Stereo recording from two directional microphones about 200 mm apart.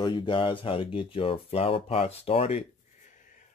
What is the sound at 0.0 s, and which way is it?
Speech, 20° left (ahead or behind).